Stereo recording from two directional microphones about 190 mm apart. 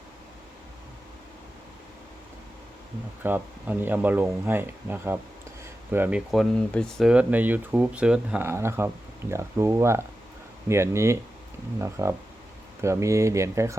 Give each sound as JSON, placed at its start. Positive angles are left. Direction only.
{"t": 3.2, "sound": "speech", "side_deg": -10}